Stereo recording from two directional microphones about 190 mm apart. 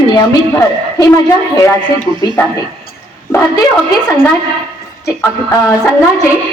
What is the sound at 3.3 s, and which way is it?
A man's voice, 10° left (ahead or behind).